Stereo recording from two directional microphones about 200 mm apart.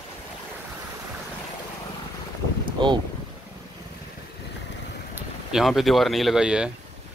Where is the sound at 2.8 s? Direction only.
25° right (ahead or behind).